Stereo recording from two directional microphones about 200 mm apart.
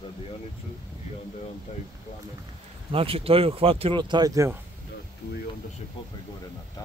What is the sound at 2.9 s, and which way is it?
Speech, 30° right (ahead or behind).